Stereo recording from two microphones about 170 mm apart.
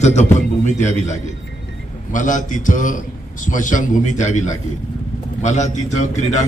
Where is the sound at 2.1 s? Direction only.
50° left (ahead or behind).